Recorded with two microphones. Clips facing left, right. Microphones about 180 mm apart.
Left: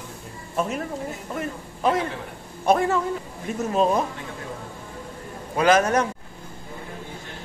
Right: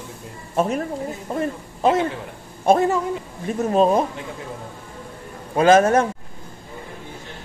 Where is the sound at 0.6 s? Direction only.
40° right (ahead or behind).